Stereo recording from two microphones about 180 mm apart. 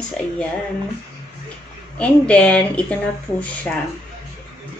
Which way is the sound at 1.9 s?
5° left (ahead or behind).